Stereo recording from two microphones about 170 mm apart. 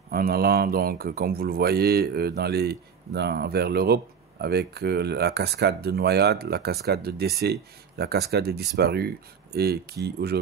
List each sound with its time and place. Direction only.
0.1 s speech: 65° right (ahead or behind)